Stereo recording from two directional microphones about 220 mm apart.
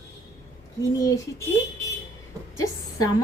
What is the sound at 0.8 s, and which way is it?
Speech, 15° left (ahead or behind).